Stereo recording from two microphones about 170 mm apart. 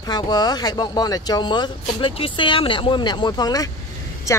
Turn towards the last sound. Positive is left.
turn(degrees=20)  # may be behind; listen again after turning